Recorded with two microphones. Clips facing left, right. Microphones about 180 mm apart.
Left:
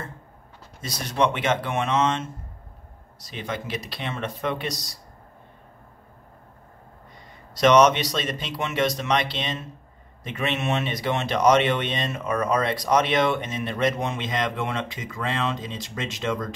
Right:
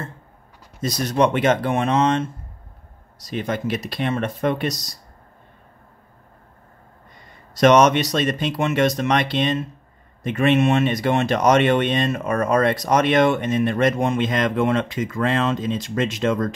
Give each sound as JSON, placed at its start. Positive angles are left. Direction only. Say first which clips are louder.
{"t": 0.8, "sound": "speech", "louder": "right 5 dB", "side_deg": -45}
{"t": 3.3, "sound": "speech", "louder": "right 7 dB", "side_deg": -45}
{"t": 7.5, "sound": "speech", "louder": "right 3 dB", "side_deg": -50}